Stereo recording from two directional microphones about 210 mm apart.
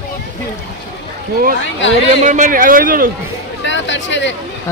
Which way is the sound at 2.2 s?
40° right (ahead or behind).